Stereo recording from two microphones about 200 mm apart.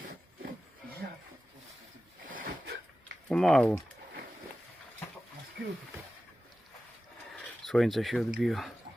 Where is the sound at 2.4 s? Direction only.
55° right (ahead or behind).